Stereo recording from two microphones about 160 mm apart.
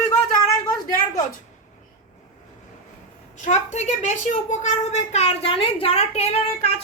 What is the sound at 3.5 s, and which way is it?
A woman's voice, 45° left (ahead or behind).